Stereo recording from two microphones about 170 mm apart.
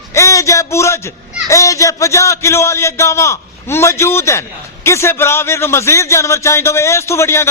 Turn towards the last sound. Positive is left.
turn(degrees=15)  # may be behind; listen again after turning